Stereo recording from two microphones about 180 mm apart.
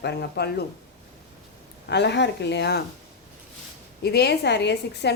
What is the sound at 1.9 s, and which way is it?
Speech, 70° left (ahead or behind).